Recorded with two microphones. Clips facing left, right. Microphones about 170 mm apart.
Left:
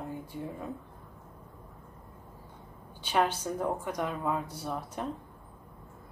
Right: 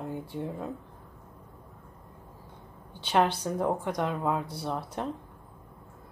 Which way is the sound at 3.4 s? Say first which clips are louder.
Right 3 dB; 10° right (ahead or behind).